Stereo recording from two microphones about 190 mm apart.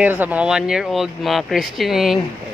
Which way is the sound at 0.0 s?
10° right (ahead or behind).